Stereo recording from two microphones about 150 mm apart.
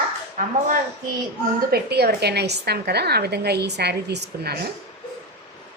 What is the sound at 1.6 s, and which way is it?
Speech, 90° right.